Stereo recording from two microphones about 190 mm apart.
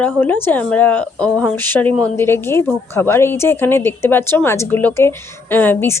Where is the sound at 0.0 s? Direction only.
10° left (ahead or behind).